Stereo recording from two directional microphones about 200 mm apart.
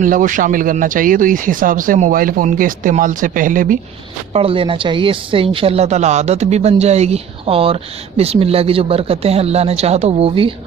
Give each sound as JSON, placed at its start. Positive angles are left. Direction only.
{"t": 0.0, "sound": "speech", "side_deg": -40}
{"t": 4.3, "sound": "speech", "side_deg": -30}